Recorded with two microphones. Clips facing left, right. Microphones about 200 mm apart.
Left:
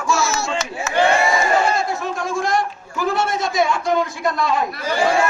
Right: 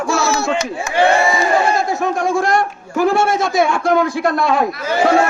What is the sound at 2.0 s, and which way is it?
A man's voice, 60° right (ahead or behind).